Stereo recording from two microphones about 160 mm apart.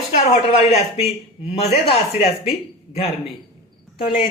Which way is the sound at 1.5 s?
40° left (ahead or behind).